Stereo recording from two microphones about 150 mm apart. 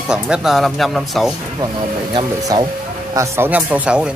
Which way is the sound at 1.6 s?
30° right (ahead or behind).